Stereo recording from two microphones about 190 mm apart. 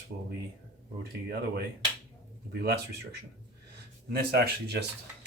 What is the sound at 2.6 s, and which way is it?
Speech, 60° right (ahead or behind).